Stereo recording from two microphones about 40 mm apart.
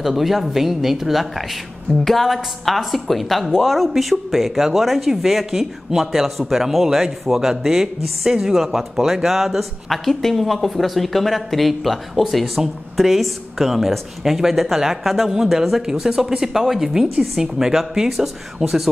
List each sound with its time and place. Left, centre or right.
0.0 s a woman's voice: centre